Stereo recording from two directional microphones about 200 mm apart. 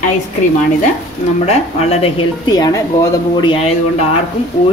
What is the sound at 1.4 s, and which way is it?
Speech, 30° left (ahead or behind).